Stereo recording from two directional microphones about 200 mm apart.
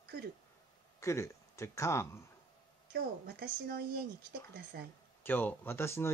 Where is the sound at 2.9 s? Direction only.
50° right (ahead or behind).